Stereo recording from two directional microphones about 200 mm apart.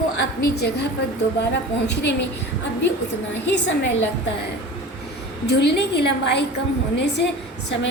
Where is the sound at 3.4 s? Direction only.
60° left (ahead or behind).